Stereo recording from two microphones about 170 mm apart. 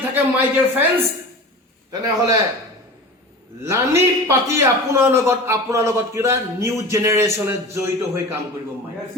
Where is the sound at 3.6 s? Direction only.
15° right (ahead or behind).